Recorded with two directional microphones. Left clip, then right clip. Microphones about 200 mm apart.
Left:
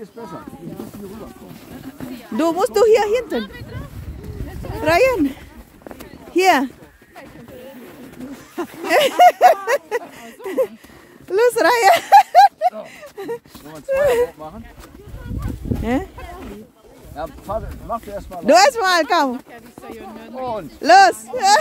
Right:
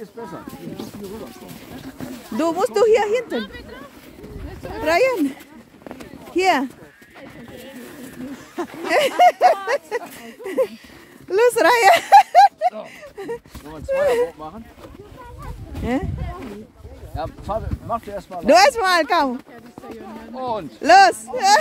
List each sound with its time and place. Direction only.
2.3 s speech: 15° left (ahead or behind)
3.3 s speech: 60° left (ahead or behind)
4.8 s speech: 15° left (ahead or behind)
8.8 s speech: 20° left (ahead or behind)
15.8 s speech: 15° left (ahead or behind)
17.1 s speech: 30° left (ahead or behind)
18.4 s speech: 10° left (ahead or behind)
20.3 s speech: 35° left (ahead or behind)
20.8 s speech: 10° left (ahead or behind)